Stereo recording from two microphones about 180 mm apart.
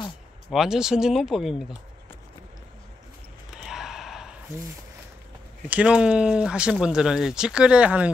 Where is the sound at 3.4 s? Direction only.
Centre (ahead or behind).